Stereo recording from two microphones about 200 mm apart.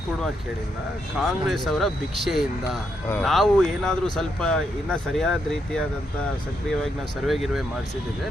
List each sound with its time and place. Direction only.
1.2 s speech: centre (ahead or behind)
7.3 s speech: centre (ahead or behind)